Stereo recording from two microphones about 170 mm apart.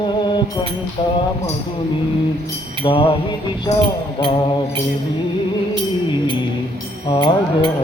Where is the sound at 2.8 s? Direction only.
25° left (ahead or behind).